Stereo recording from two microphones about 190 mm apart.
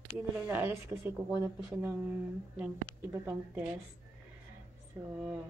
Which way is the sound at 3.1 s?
15° right (ahead or behind).